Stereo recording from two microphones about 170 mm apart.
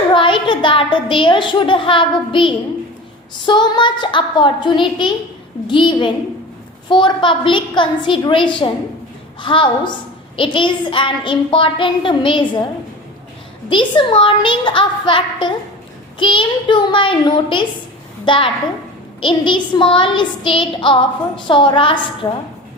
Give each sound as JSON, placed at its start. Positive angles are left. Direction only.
{"t": 0.1, "sound": "a woman's voice", "side_deg": 30}
{"t": 13.7, "sound": "a woman's voice", "side_deg": 30}